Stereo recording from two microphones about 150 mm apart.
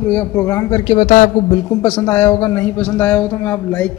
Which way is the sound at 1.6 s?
15° left (ahead or behind).